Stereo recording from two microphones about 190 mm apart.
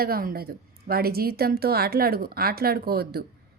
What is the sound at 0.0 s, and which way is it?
Speech, 50° right (ahead or behind).